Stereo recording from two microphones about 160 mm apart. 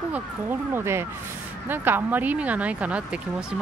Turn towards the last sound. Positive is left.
turn(degrees=-5)  # may be behind; listen again after turning